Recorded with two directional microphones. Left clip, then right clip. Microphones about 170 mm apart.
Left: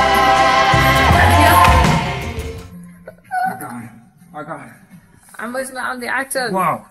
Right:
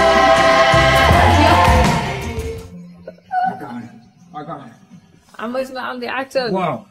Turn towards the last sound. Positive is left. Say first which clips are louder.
# even
turn(degrees=10)  # may be behind; listen again after turning